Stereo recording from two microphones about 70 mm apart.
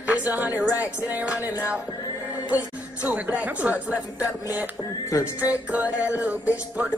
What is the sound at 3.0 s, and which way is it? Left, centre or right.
Music, right.